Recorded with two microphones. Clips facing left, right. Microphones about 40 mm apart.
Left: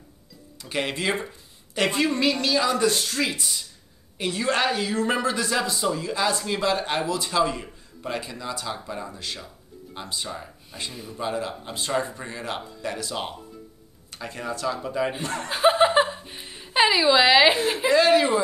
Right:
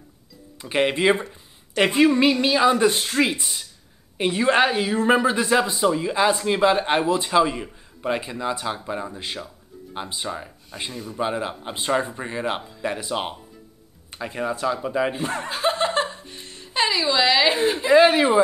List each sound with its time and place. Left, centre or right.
0.6 s speech: right
10.7 s speech: centre
11.1 s speech: right
15.4 s chuckle: centre
17.9 s speech: right